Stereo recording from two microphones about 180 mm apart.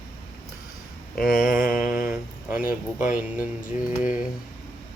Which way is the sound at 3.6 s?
45° left (ahead or behind).